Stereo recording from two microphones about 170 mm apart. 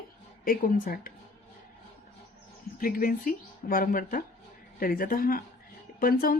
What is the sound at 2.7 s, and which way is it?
Speech, 55° left (ahead or behind).